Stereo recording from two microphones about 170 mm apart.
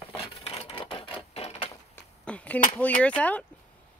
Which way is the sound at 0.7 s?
30° left (ahead or behind).